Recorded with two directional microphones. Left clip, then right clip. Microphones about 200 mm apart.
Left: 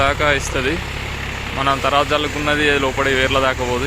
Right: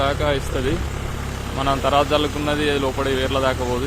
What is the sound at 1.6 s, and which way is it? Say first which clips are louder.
Speech: left 2 dB; 5° right (ahead or behind).